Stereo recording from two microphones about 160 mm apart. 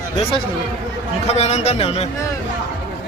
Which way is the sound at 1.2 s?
45° left (ahead or behind).